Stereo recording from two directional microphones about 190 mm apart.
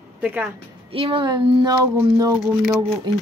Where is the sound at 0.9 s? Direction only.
30° right (ahead or behind).